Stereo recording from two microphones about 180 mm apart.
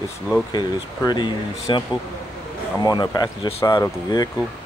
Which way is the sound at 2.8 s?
20° left (ahead or behind).